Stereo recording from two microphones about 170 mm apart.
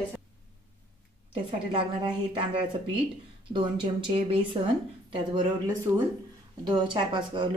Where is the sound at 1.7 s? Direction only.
30° right (ahead or behind).